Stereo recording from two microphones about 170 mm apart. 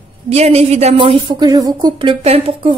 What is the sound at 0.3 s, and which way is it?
A woman's voice, 40° right (ahead or behind).